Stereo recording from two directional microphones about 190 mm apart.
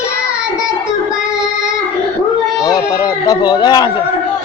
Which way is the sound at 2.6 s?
20° left (ahead or behind).